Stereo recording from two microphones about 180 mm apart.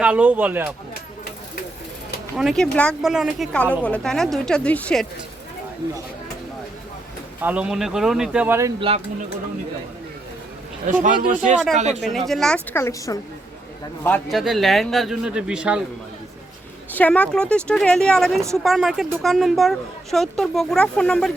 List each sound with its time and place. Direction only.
0.0 s speech: 10° right (ahead or behind)
2.3 s speech: centre (ahead or behind)
7.4 s speech: 5° right (ahead or behind)
11.0 s speech: 45° right (ahead or behind)
12.3 s speech: centre (ahead or behind)
12.7 s a woman's voice: 15° left (ahead or behind)
14.3 s speech: centre (ahead or behind)
16.9 s speech: 10° left (ahead or behind)